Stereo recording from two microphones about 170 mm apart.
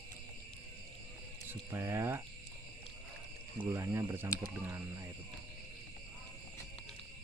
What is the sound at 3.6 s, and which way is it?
Speech, 15° right (ahead or behind).